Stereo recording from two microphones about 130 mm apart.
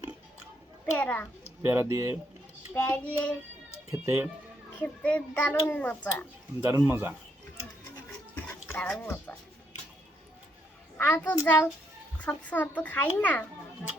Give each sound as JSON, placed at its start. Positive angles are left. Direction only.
{"t": 0.9, "sound": "a child's voice", "side_deg": 10}
{"t": 1.6, "sound": "speech", "side_deg": -20}
{"t": 2.7, "sound": "a child's voice", "side_deg": 10}
{"t": 3.9, "sound": "speech", "side_deg": -20}
{"t": 4.8, "sound": "a child's voice", "side_deg": 10}
{"t": 6.7, "sound": "speech", "side_deg": -20}
{"t": 8.4, "sound": "speech", "side_deg": 15}
{"t": 10.9, "sound": "a child's voice", "side_deg": 15}